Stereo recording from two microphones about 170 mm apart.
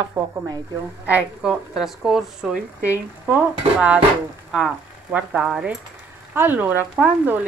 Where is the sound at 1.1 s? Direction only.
5° right (ahead or behind).